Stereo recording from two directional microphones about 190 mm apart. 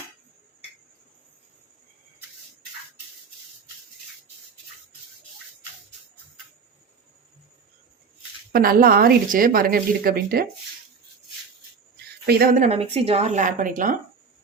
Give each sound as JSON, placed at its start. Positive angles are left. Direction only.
{"t": 8.5, "sound": "a woman's voice", "side_deg": -50}
{"t": 12.2, "sound": "speech", "side_deg": -55}
{"t": 12.5, "sound": "a woman's voice", "side_deg": -35}